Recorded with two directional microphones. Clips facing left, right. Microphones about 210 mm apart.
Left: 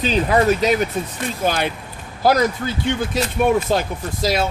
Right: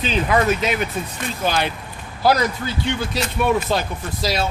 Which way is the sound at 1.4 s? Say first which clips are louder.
Left 1 dB; 50° left (ahead or behind).